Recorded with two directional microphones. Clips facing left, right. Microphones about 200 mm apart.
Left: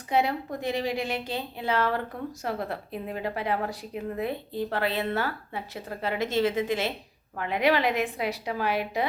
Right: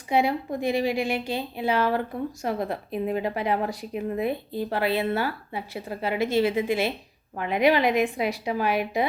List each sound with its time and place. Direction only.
0.1 s speech: 10° right (ahead or behind)